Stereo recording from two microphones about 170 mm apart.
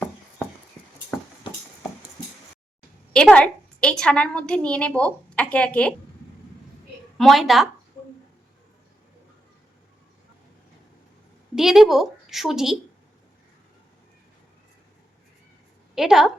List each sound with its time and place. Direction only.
3.1 s a woman's voice: 5° left (ahead or behind)
7.2 s a woman's voice: centre (ahead or behind)
11.5 s a woman's voice: centre (ahead or behind)
16.0 s a woman's voice: centre (ahead or behind)